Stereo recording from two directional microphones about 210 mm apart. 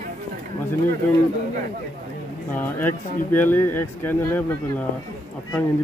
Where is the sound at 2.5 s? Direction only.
10° left (ahead or behind).